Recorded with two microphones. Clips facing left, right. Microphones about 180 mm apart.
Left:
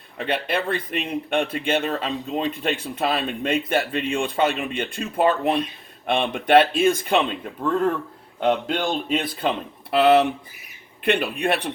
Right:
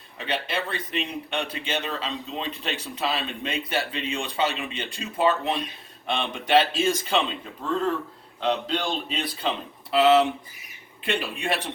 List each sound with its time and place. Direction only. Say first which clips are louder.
0.2 s speech: left 5 dB; 55° left (ahead or behind)